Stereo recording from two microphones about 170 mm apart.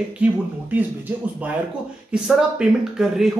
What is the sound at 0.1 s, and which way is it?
Speech, 10° right (ahead or behind).